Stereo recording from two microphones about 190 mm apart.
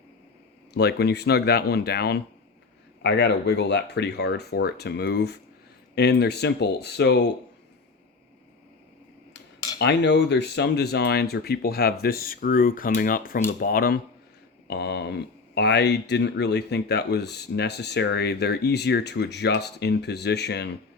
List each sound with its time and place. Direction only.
0.7 s speech: 60° left (ahead or behind)
9.7 s speech: 60° left (ahead or behind)